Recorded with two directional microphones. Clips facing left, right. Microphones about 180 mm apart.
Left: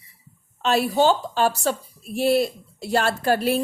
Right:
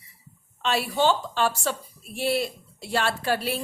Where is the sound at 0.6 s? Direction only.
40° left (ahead or behind).